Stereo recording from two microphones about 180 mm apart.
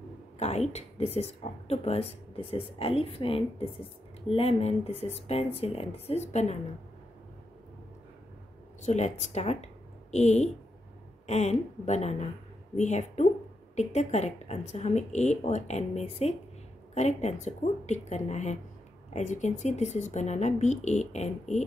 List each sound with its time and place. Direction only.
0.4 s a woman's voice: 35° left (ahead or behind)
8.8 s a woman's voice: 40° left (ahead or behind)